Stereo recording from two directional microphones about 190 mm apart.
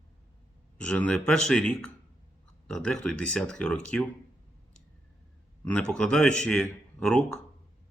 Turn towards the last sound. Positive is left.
turn(degrees=5)  # may be behind; listen again after turning